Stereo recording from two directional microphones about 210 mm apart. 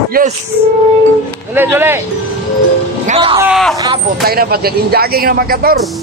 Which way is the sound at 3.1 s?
25° right (ahead or behind).